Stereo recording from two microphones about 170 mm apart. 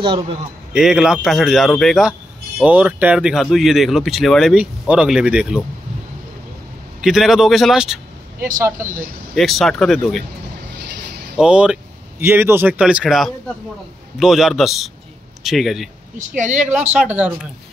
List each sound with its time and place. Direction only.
0.0 s a man's voice: 30° right (ahead or behind)
0.7 s speech: 5° right (ahead or behind)
7.0 s speech: centre (ahead or behind)
8.8 s speech: 50° right (ahead or behind)
9.3 s speech: centre (ahead or behind)
11.3 s speech: 5° right (ahead or behind)
16.3 s speech: 45° right (ahead or behind)
17.0 s speech: 5° right (ahead or behind)